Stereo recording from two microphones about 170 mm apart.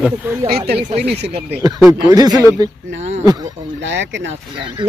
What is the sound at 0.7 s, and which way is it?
Speech, 70° right (ahead or behind).